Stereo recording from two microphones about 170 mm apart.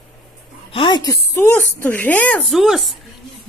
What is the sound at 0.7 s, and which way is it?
A woman's voice, 25° left (ahead or behind).